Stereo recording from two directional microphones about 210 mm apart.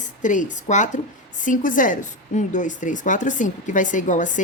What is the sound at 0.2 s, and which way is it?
A woman's voice, 35° left (ahead or behind).